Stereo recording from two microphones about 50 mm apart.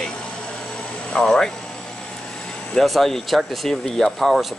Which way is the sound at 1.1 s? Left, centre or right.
Centre.